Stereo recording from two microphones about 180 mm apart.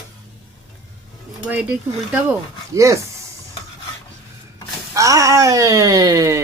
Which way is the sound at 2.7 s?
15° right (ahead or behind).